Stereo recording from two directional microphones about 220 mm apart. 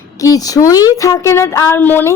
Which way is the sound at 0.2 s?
15° left (ahead or behind).